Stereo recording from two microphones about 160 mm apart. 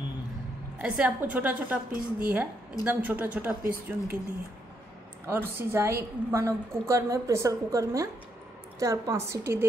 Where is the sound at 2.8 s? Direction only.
10° right (ahead or behind).